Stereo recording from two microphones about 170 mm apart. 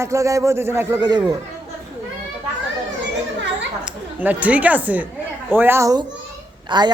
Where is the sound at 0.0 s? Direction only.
20° right (ahead or behind).